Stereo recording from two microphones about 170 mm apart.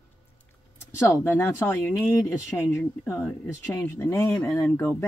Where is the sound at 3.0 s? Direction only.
10° left (ahead or behind).